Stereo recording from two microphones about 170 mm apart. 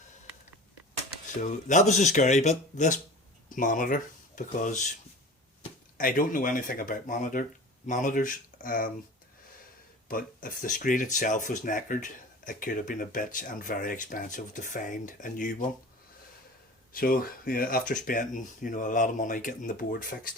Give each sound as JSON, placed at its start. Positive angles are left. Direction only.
{"t": 1.4, "sound": "speech", "side_deg": 45}
{"t": 6.0, "sound": "speech", "side_deg": 55}
{"t": 10.1, "sound": "speech", "side_deg": 55}
{"t": 16.9, "sound": "speech", "side_deg": 60}